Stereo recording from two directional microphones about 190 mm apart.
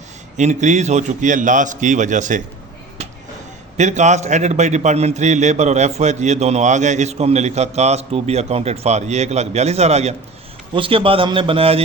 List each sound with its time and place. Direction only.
0.3 s a man's voice: 40° right (ahead or behind)
3.8 s a man's voice: 40° right (ahead or behind)